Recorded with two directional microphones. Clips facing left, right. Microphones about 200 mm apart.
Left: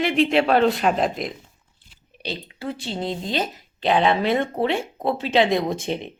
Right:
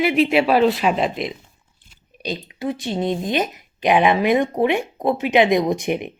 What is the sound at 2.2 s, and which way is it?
Speech, 15° right (ahead or behind).